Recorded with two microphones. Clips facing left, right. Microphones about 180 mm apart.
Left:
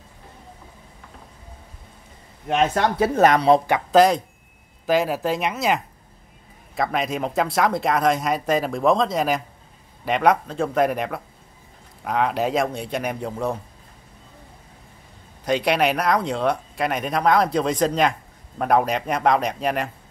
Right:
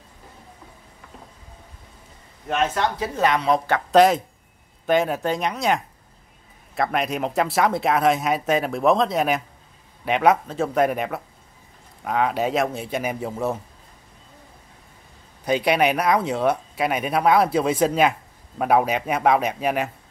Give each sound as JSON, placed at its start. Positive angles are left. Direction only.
{"t": 2.7, "sound": "speech", "side_deg": 50}
{"t": 3.3, "sound": "speech", "side_deg": 30}
{"t": 3.9, "sound": "speech", "side_deg": 0}
{"t": 15.4, "sound": "speech", "side_deg": -5}